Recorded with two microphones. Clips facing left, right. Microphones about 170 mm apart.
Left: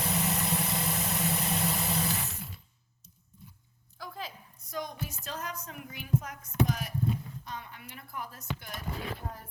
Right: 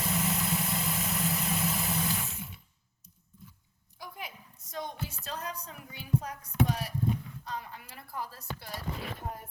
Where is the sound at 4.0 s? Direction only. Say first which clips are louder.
Left 2 dB; 20° right (ahead or behind).